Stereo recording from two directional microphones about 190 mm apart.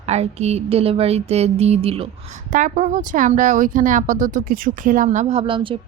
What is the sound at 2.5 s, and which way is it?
Speech, 40° right (ahead or behind).